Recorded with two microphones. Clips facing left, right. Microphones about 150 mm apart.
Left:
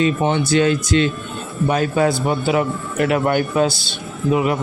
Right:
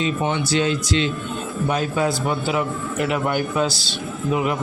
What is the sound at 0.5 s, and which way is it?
A man's voice, 55° left (ahead or behind).